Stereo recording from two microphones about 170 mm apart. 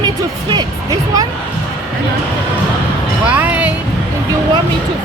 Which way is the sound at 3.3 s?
10° right (ahead or behind).